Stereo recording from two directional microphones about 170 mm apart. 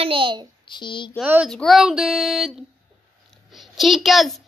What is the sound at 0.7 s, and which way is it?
Speech, 25° left (ahead or behind).